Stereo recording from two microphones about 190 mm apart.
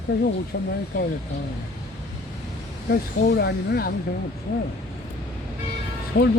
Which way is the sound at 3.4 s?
55° left (ahead or behind).